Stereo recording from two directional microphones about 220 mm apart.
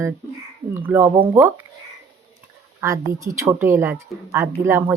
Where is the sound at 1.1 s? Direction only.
25° right (ahead or behind).